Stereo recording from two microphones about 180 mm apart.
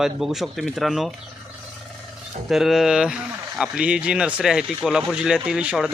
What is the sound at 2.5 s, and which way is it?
Speech, centre (ahead or behind).